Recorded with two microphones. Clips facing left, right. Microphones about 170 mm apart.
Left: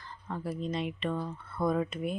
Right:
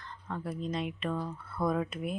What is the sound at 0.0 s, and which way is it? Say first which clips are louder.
Speech: left 1 dB; 5° left (ahead or behind).